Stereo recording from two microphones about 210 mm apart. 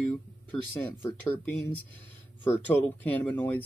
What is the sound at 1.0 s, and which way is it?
Speech, 10° left (ahead or behind).